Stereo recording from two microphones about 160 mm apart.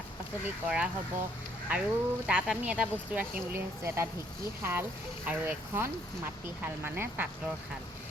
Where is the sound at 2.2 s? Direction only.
5° right (ahead or behind).